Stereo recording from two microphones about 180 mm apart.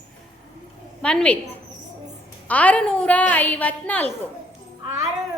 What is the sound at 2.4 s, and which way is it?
A woman's voice, 10° left (ahead or behind).